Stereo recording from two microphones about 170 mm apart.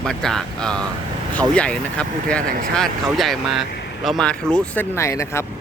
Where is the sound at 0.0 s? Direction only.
5° left (ahead or behind).